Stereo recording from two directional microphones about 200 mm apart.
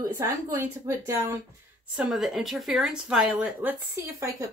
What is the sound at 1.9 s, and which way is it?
Speech, centre (ahead or behind).